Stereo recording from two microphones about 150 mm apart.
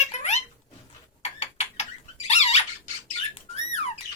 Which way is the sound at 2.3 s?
45° left (ahead or behind).